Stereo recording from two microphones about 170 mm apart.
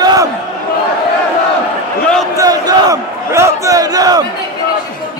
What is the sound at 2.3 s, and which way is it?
Crowd, 20° right (ahead or behind).